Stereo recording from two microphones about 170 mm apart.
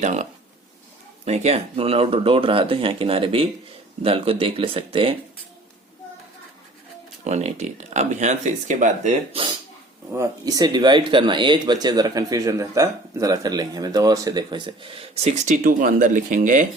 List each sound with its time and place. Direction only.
0.0 s speech: 45° right (ahead or behind)
7.3 s speech: 40° right (ahead or behind)
10.1 s speech: 20° right (ahead or behind); by 16.6 s 50° right (ahead or behind)